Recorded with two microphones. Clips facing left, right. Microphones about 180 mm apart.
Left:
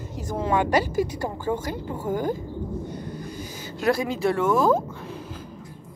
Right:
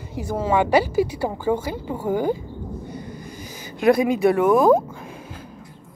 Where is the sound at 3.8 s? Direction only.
15° right (ahead or behind).